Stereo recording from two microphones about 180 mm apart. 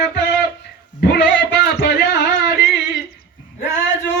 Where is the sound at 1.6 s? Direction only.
70° left (ahead or behind).